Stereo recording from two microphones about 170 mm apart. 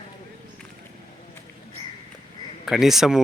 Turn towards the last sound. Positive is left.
turn(degrees=0)  # may be behind; listen again after turning